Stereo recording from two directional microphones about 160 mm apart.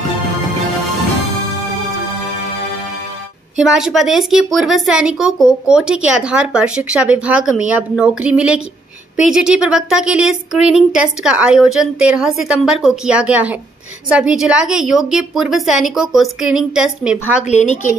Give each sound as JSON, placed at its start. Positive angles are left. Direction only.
{"t": 3.5, "sound": "a woman's voice", "side_deg": -5}
{"t": 17.5, "sound": "a woman's voice", "side_deg": 45}